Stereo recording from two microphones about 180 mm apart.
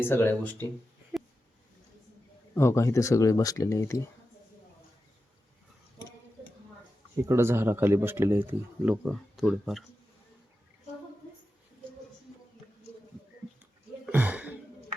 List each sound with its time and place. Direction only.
0.0 s speech: 10° left (ahead or behind)
2.6 s speech: 15° left (ahead or behind)
7.2 s speech: 15° right (ahead or behind)
14.1 s a sound: 10° right (ahead or behind)